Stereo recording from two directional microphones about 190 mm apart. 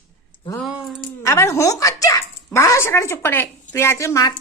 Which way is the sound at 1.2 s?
15° left (ahead or behind).